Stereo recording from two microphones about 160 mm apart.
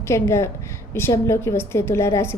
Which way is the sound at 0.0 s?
15° left (ahead or behind).